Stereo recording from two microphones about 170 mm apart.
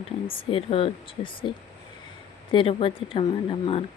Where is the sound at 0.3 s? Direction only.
30° left (ahead or behind).